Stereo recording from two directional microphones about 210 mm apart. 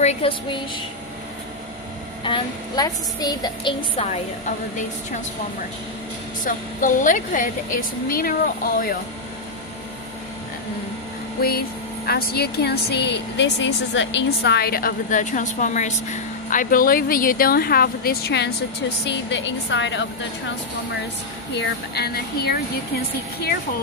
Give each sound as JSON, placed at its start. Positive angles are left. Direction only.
{"t": 0.0, "sound": "a woman's voice", "side_deg": 30}
{"t": 2.2, "sound": "a woman's voice", "side_deg": 20}
{"t": 6.4, "sound": "a woman's voice", "side_deg": 40}
{"t": 11.4, "sound": "a woman's voice", "side_deg": 45}
{"t": 21.5, "sound": "speech", "side_deg": 50}